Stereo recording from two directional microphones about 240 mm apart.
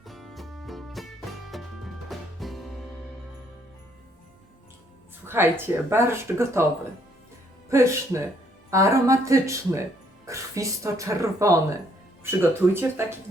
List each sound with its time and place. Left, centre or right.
0.0 s music: centre
5.2 s speech: centre
7.7 s speech: centre